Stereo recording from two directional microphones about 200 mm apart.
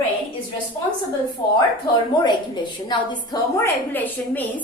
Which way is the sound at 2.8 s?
20° left (ahead or behind).